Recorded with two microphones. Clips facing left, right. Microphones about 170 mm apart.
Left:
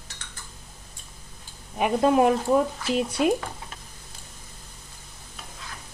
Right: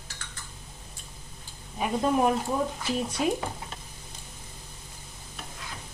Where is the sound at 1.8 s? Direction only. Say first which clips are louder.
Left 5 dB; 80° left.